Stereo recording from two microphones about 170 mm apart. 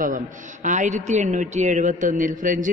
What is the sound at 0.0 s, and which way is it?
A man's voice, 50° right (ahead or behind).